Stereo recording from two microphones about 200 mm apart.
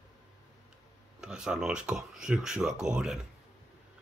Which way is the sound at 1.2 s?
5° right (ahead or behind).